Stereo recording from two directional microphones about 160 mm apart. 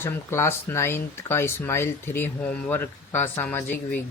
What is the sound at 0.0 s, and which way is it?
Speech, 15° left (ahead or behind).